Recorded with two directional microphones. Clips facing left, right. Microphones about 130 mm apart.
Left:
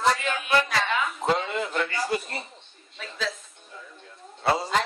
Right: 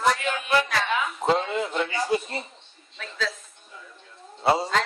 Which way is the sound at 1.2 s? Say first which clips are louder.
Right 4 dB; 20° right (ahead or behind).